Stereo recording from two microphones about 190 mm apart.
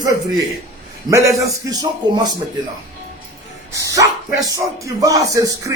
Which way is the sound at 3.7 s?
15° right (ahead or behind).